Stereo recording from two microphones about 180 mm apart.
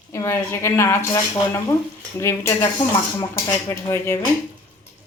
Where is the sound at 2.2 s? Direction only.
15° left (ahead or behind).